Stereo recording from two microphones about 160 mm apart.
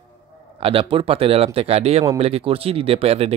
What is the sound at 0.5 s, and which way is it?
Speech, 35° right (ahead or behind).